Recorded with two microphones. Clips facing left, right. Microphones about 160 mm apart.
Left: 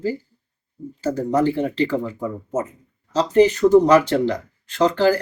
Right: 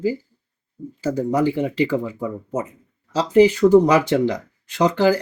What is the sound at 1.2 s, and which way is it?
Speech, 10° right (ahead or behind).